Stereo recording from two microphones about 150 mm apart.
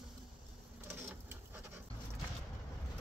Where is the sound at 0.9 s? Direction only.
15° right (ahead or behind).